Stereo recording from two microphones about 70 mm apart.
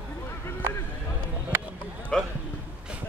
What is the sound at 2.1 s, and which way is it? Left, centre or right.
Speech, centre.